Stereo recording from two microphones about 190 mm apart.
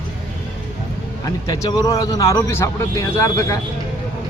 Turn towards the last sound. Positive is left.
turn(degrees=15)  # may be behind; listen again after turning